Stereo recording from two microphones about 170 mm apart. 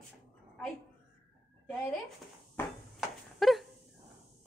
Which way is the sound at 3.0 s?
Centre (ahead or behind).